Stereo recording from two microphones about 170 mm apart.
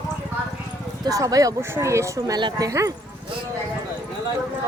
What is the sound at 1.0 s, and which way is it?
Speech, 20° right (ahead or behind).